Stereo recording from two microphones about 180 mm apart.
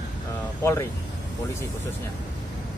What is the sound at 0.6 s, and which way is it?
Speech, 15° left (ahead or behind).